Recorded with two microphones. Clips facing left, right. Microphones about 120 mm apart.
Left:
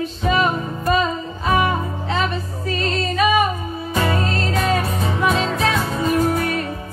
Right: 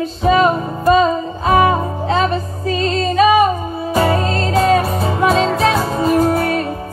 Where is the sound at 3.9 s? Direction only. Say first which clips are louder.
Right 5 dB; 35° right (ahead or behind).